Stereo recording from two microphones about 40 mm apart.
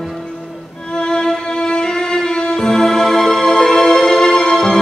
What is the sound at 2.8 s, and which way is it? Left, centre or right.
Music, centre.